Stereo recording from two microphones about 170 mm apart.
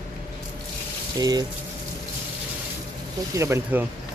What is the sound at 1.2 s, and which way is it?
Speech, 20° right (ahead or behind).